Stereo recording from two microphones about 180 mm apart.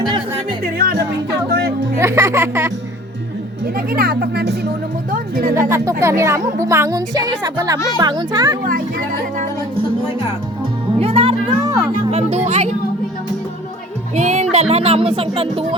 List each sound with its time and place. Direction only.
0.8 s music: 55° right (ahead or behind)
2.0 s a woman's voice: 15° right (ahead or behind)
3.8 s speech: 55° right (ahead or behind)
5.1 s speech: 50° right (ahead or behind)
5.6 s a woman's voice: 15° right (ahead or behind)
11.0 s music: 30° right (ahead or behind)
12.1 s speech: 40° right (ahead or behind)
14.2 s speech: 40° right (ahead or behind)